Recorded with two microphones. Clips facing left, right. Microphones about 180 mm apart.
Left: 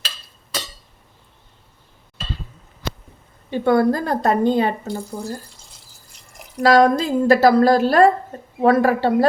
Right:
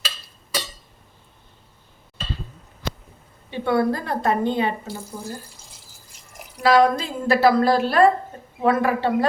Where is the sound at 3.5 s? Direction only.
45° left (ahead or behind).